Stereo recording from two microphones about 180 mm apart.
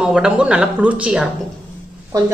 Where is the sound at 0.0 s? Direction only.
5° right (ahead or behind).